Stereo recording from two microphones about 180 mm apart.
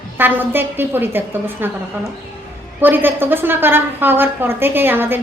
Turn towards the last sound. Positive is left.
turn(degrees=-10)  # may be behind; listen again after turning